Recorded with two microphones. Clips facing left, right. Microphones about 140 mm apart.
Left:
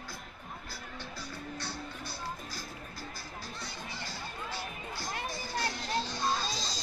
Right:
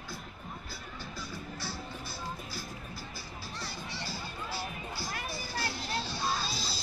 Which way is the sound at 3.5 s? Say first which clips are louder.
Right 1 dB; 70° right (ahead or behind).